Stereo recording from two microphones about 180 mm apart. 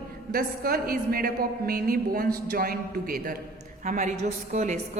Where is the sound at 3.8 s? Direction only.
45° right (ahead or behind).